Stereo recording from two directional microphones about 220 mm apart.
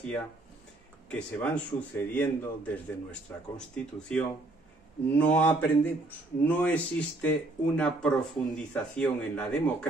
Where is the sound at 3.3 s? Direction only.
5° left (ahead or behind).